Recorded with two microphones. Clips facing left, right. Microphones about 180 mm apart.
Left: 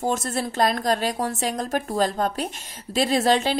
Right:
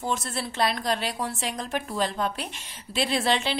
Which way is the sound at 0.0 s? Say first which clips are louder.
Left 5 dB; 45° left (ahead or behind).